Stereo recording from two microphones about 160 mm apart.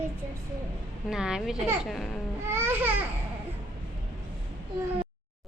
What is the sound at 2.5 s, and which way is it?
Babbling, 15° right (ahead or behind).